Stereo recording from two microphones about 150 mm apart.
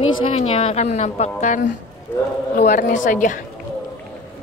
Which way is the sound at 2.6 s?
60° left (ahead or behind).